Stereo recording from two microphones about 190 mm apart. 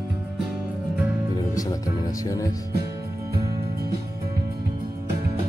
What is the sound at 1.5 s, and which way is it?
Speech, 20° left (ahead or behind).